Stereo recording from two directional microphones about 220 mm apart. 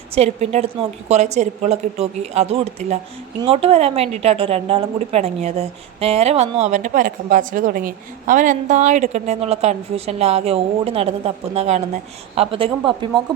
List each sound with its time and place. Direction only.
0.1 s a woman's voice: 30° right (ahead or behind)